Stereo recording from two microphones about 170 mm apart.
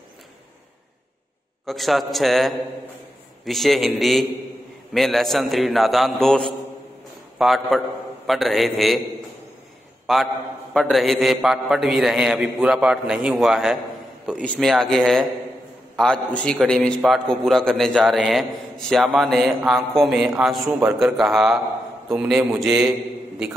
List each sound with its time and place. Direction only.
1.7 s a man's voice: centre (ahead or behind)
10.7 s a man's voice: centre (ahead or behind)